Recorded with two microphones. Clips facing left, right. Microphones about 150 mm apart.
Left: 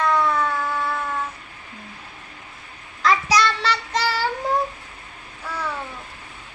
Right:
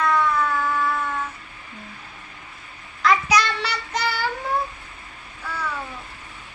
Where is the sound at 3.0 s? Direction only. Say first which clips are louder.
Left 1 dB; 30° left (ahead or behind).